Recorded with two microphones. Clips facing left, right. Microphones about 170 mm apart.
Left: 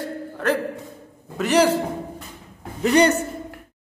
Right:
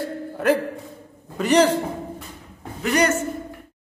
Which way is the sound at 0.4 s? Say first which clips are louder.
Right 3 dB; 10° right (ahead or behind).